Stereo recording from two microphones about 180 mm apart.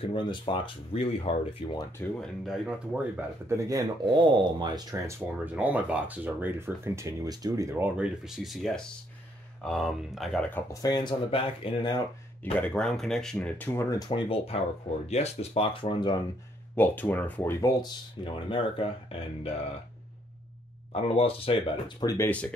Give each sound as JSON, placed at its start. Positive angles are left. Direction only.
{"t": 0.0, "sound": "speech", "side_deg": 25}
{"t": 2.0, "sound": "speech", "side_deg": 5}
{"t": 5.4, "sound": "speech", "side_deg": -10}
{"t": 10.7, "sound": "speech", "side_deg": 20}
{"t": 12.5, "sound": "speech", "side_deg": 5}
{"t": 16.7, "sound": "speech", "side_deg": 10}
{"t": 20.9, "sound": "speech", "side_deg": 30}
{"t": 22.0, "sound": "speech", "side_deg": 15}